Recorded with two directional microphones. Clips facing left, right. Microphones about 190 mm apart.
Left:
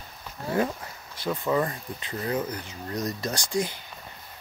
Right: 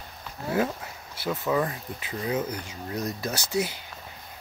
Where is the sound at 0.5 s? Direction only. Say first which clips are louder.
Even; 5° right (ahead or behind).